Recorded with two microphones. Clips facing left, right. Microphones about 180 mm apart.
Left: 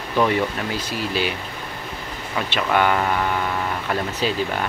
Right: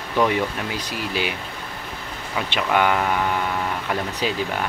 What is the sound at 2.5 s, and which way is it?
Speech, 10° right (ahead or behind).